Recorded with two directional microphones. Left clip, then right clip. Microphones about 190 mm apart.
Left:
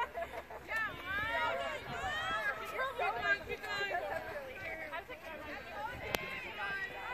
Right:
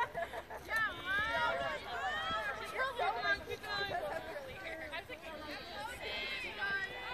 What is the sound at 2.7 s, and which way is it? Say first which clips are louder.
Chatter: right 4 dB; 50° left (ahead or behind).